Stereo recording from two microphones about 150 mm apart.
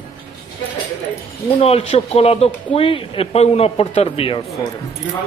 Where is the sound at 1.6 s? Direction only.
40° left (ahead or behind).